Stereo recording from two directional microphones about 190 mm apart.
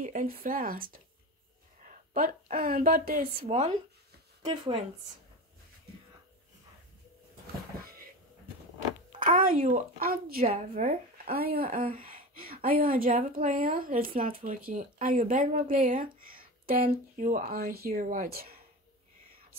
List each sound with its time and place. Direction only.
0.0 s a woman's voice: 45° right (ahead or behind)
3.4 s a woman's voice: 35° right (ahead or behind)
9.6 s a woman's voice: 45° right (ahead or behind)
10.4 s a woman's voice: 35° right (ahead or behind)
11.2 s a woman's voice: 50° right (ahead or behind)